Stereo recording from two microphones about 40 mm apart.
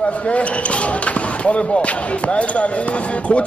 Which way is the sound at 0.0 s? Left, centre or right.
Left.